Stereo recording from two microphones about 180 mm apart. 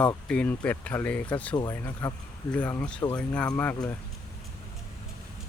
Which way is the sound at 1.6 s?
20° left (ahead or behind).